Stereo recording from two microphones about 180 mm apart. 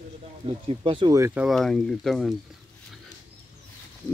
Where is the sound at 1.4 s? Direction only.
Centre (ahead or behind).